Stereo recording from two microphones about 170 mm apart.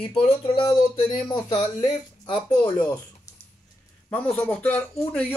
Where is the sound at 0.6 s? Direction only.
25° left (ahead or behind).